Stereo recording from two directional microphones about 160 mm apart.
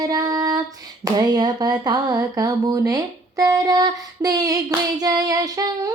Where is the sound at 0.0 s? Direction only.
20° right (ahead or behind).